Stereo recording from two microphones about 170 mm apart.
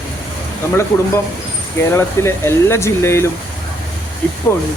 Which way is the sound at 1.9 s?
15° left (ahead or behind).